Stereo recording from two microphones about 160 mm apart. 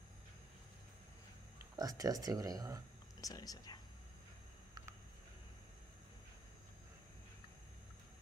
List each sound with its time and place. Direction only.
1.8 s speech: 20° right (ahead or behind)
3.2 s speech: 20° left (ahead or behind)